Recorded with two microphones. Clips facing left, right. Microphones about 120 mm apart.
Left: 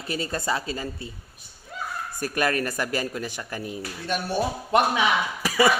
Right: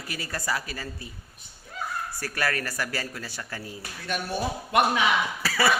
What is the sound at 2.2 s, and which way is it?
Speech, 20° left (ahead or behind).